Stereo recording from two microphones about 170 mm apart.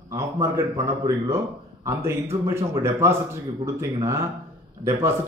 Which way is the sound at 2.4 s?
15° right (ahead or behind).